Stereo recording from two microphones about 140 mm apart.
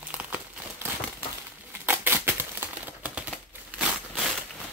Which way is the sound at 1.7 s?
15° right (ahead or behind).